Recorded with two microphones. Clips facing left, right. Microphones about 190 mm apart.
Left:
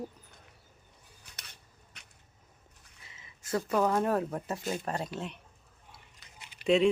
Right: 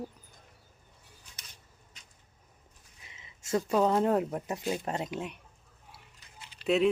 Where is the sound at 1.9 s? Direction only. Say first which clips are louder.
Left 4 dB; 65° left (ahead or behind).